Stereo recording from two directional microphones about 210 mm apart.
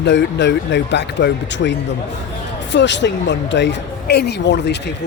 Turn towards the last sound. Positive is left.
turn(degrees=55)  # may be behind; listen again after turning